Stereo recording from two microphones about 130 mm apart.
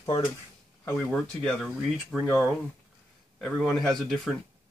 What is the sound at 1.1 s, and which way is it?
Speech, 5° left (ahead or behind).